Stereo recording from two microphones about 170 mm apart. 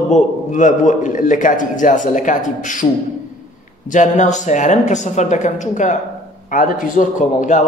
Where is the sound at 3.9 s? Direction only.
45° left (ahead or behind).